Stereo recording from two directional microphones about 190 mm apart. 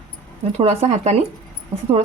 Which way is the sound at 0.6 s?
35° right (ahead or behind).